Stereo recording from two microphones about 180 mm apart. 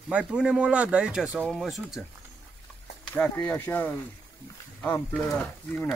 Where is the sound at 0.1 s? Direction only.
5° right (ahead or behind).